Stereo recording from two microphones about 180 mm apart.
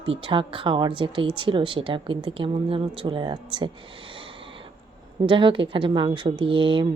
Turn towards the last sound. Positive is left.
turn(degrees=-30)  # may be behind; listen again after turning